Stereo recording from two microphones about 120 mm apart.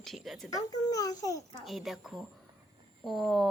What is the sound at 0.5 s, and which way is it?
Speech, 30° left (ahead or behind).